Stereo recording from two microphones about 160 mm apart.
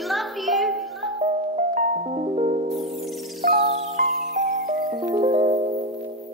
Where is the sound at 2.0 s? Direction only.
35° right (ahead or behind).